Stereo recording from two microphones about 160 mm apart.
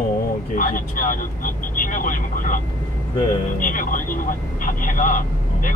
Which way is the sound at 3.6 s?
55° left (ahead or behind).